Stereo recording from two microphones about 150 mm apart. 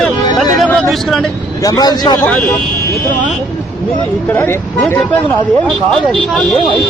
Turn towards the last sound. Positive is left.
turn(degrees=15)  # may be behind; listen again after turning